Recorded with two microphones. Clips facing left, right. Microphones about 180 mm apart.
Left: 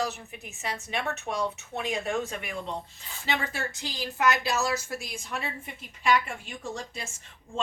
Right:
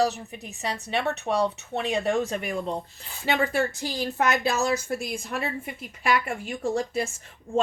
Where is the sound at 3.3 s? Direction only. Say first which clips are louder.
Right 7 dB; 55° right (ahead or behind).